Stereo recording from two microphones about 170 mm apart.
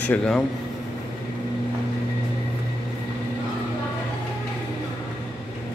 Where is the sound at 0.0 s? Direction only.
10° left (ahead or behind).